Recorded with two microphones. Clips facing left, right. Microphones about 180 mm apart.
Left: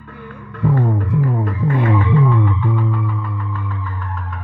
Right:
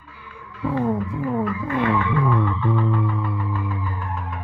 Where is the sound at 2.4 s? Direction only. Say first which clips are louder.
Left 2 dB; 15° left (ahead or behind).